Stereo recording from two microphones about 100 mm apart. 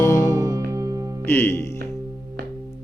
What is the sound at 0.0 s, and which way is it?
Music, 30° left (ahead or behind).